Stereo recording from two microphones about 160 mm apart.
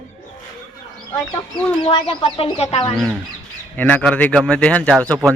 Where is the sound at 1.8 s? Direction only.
35° left (ahead or behind).